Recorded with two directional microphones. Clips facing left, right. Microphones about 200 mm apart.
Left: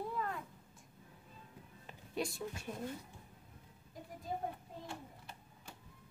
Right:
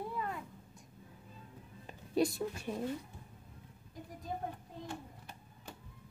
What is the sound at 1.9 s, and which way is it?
Music, 40° right (ahead or behind).